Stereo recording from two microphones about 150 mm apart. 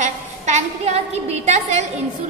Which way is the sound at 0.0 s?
50° right (ahead or behind).